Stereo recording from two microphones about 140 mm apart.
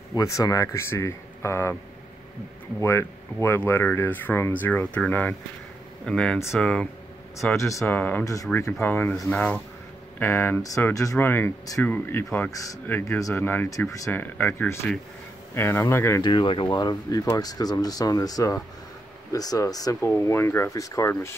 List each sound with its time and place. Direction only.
0.1 s speech: 25° left (ahead or behind)
2.8 s speech: 20° left (ahead or behind)
7.5 s speech: 20° left (ahead or behind)
16.2 s speech: 35° left (ahead or behind); by 21.4 s 15° left (ahead or behind)